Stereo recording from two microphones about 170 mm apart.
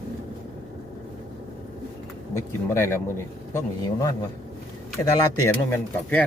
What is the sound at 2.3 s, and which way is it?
Speech, 15° left (ahead or behind).